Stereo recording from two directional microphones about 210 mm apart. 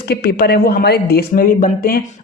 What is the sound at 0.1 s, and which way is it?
Speech, 45° left (ahead or behind).